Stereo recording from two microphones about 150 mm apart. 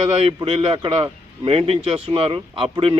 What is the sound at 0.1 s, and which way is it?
A man's voice, 40° right (ahead or behind).